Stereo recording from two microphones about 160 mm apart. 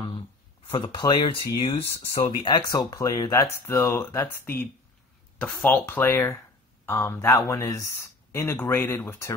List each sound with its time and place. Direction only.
0.7 s speech: 30° left (ahead or behind); by 9.3 s 15° left (ahead or behind)